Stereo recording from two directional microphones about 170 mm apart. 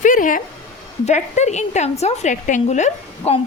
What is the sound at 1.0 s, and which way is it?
A woman's voice, 40° left (ahead or behind).